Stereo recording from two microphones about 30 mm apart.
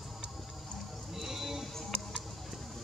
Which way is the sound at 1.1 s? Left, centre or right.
Centre.